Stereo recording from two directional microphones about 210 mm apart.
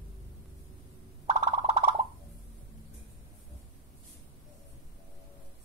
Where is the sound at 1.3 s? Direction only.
25° right (ahead or behind).